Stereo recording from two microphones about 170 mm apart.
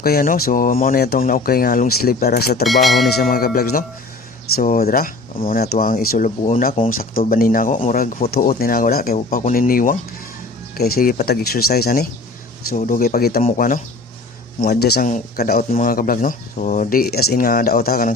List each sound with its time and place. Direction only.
0.0 s speech: 60° left (ahead or behind)
2.6 s speech: centre (ahead or behind)
3.2 s speech: 60° left (ahead or behind)
8.3 s speech: 65° left (ahead or behind)
13.6 s speech: 50° left (ahead or behind)
14.6 s speech: 70° left (ahead or behind)
15.7 s speech: 55° left (ahead or behind)